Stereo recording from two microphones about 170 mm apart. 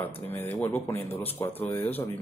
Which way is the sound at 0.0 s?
10° left (ahead or behind).